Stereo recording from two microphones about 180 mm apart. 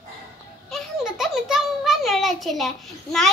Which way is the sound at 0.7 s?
Centre (ahead or behind).